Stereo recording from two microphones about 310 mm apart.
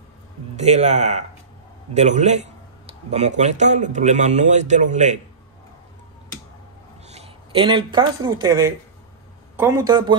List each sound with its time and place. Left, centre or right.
0.6 s speech: right
7.1 s a man's voice: centre